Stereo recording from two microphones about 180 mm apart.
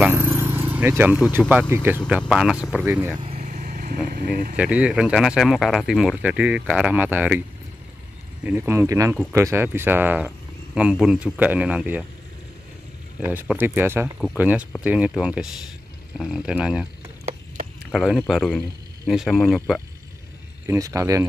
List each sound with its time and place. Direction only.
0.0 s a sound: 15° right (ahead or behind)
0.7 s speech: 10° right (ahead or behind)
3.2 s vehicle: 35° right (ahead or behind)
4.1 s speech: 50° right (ahead or behind)
4.6 s speech: 5° right (ahead or behind)
8.5 s speech: 10° right (ahead or behind)
13.2 s speech: 10° right (ahead or behind)
17.9 s speech: centre (ahead or behind)
20.6 s speech: 15° right (ahead or behind)